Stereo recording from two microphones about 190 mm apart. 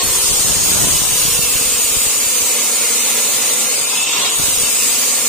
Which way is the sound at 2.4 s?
Centre (ahead or behind).